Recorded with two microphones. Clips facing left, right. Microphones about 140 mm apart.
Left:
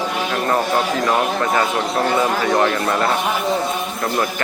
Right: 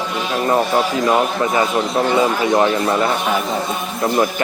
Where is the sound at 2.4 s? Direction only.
15° right (ahead or behind).